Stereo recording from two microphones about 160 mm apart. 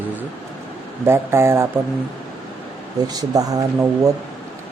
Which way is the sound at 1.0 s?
15° right (ahead or behind).